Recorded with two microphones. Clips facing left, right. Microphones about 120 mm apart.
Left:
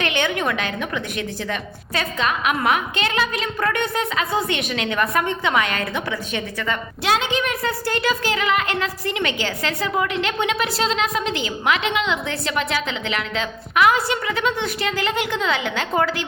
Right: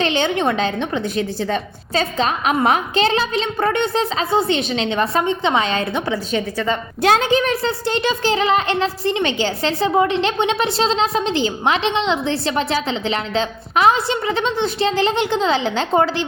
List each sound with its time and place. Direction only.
0.0 s speech: 30° right (ahead or behind)
7.0 s speech: 45° right (ahead or behind); by 16.2 s 25° right (ahead or behind)